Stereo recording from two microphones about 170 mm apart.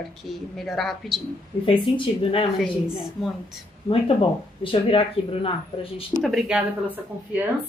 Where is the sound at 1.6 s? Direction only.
30° left (ahead or behind).